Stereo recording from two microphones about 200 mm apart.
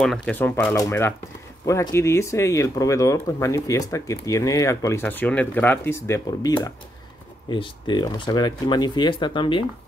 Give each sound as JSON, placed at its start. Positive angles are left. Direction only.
{"t": 0.0, "sound": "speech", "side_deg": 5}